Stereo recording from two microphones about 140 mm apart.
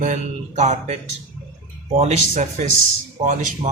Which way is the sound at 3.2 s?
65° right (ahead or behind).